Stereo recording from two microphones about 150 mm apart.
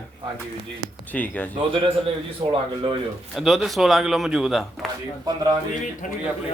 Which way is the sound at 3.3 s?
Centre (ahead or behind).